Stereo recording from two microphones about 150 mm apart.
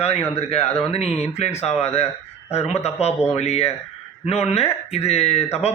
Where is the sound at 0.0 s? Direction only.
45° left (ahead or behind).